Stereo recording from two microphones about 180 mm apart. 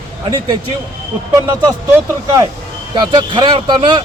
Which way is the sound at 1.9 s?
20° right (ahead or behind).